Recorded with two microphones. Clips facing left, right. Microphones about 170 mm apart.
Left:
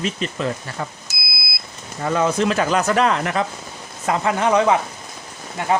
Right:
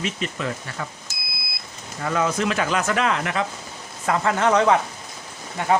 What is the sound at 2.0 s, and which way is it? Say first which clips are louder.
Speech: left 4 dB; 30° left (ahead or behind).